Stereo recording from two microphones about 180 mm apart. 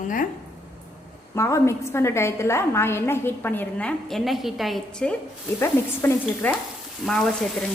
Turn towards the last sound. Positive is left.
turn(degrees=5)  # may be behind; listen again after turning